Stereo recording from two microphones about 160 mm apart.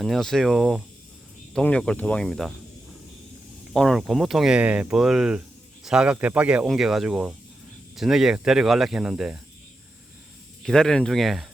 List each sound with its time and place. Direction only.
0.0 s speech: centre (ahead or behind)
3.7 s speech: centre (ahead or behind)
10.6 s speech: 5° left (ahead or behind)